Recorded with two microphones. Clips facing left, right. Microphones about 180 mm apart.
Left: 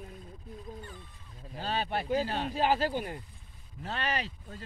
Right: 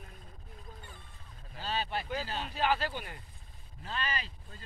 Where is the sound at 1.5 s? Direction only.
50° left (ahead or behind).